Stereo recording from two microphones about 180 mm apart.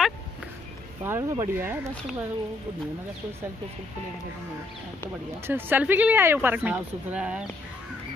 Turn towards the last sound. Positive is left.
turn(degrees=-5)  # may be behind; listen again after turning